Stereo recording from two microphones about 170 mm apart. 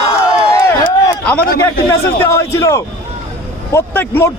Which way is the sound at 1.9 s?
15° left (ahead or behind).